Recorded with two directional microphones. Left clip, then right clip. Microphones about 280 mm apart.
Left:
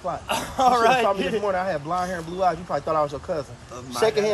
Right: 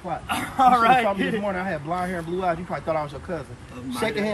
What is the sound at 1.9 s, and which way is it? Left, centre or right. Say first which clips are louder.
Speech: left 1 dB; left.